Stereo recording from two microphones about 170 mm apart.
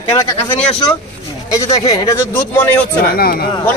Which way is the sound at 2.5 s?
10° left (ahead or behind).